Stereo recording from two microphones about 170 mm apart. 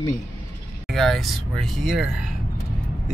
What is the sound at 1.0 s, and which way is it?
Speech, centre (ahead or behind).